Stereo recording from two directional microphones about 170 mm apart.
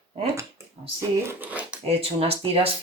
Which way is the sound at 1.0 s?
15° right (ahead or behind).